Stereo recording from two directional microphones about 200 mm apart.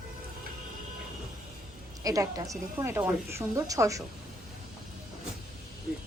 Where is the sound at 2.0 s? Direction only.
15° right (ahead or behind).